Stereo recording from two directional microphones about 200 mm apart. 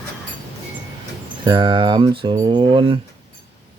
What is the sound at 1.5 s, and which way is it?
Speech, 25° right (ahead or behind).